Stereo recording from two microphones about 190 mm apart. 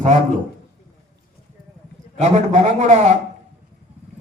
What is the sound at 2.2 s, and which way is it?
Speech, 40° right (ahead or behind).